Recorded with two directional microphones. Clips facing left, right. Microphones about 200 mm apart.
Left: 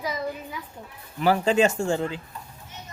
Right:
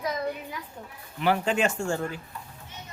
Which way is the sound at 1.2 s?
40° left (ahead or behind).